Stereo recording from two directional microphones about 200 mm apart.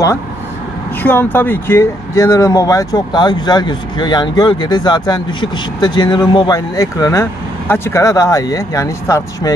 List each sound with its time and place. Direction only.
1.0 s speech: 10° left (ahead or behind)